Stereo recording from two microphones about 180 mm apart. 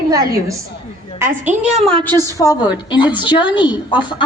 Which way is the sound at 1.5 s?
40° right (ahead or behind).